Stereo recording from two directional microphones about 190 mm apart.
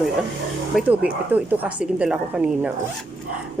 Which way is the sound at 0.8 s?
10° right (ahead or behind).